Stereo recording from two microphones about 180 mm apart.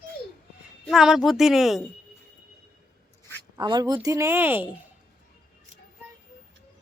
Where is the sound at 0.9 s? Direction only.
Centre (ahead or behind).